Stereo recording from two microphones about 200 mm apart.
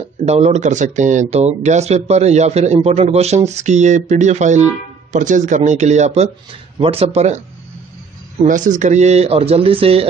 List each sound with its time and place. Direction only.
0.2 s speech: 35° right (ahead or behind)